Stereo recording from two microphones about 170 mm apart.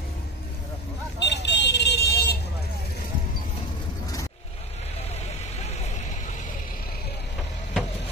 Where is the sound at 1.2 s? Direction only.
85° left.